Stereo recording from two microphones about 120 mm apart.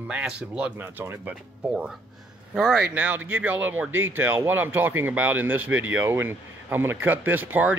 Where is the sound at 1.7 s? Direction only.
5° right (ahead or behind).